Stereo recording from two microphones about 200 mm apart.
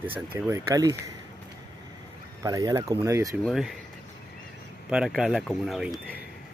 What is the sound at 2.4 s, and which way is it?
Speech, 15° right (ahead or behind).